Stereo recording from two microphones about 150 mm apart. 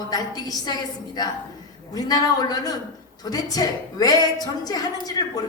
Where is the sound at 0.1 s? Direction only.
25° left (ahead or behind).